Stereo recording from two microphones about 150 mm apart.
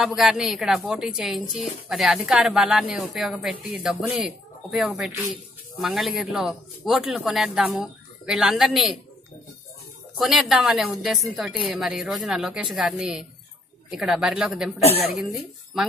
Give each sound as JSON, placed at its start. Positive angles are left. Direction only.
{"t": 0.0, "sound": "speech", "side_deg": -5}
{"t": 10.1, "sound": "speech", "side_deg": 0}
{"t": 14.8, "sound": "a woman's voice", "side_deg": 45}